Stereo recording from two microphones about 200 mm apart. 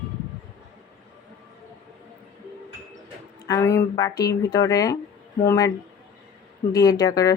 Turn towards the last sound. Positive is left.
turn(degrees=15)  # may be behind; listen again after turning